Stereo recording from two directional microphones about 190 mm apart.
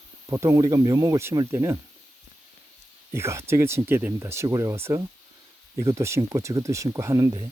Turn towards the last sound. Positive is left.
turn(degrees=-15)  # may be behind; listen again after turning